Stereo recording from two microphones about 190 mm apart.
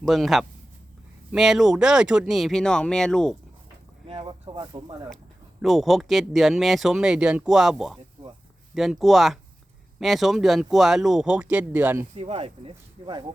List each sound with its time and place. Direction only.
0.0 s speech: centre (ahead or behind)
4.0 s speech: 30° right (ahead or behind)
5.6 s speech: centre (ahead or behind)
12.1 s speech: 30° right (ahead or behind)